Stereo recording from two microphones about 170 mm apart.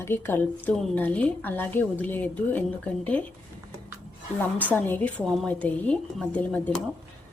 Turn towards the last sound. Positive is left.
turn(degrees=5)  # may be behind; listen again after turning